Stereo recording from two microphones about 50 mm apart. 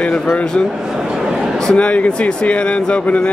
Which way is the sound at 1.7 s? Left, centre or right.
Left.